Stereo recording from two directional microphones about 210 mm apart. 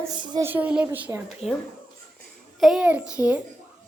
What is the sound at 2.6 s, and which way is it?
Speech, centre (ahead or behind).